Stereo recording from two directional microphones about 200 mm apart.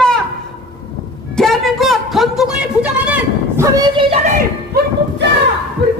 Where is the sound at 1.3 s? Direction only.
Centre (ahead or behind).